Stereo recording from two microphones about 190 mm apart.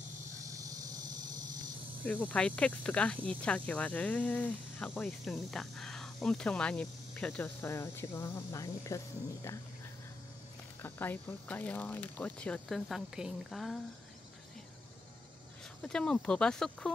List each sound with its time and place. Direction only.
0.6 s a sound: 20° right (ahead or behind)
2.0 s speech: 10° left (ahead or behind)
10.8 s speech: 10° left (ahead or behind)
15.8 s speech: 5° left (ahead or behind)